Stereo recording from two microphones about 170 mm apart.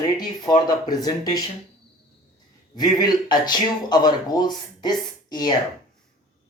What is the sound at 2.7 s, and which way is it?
A woman's voice, 25° left (ahead or behind).